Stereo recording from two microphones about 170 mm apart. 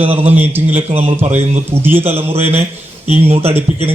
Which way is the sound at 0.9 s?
40° right (ahead or behind).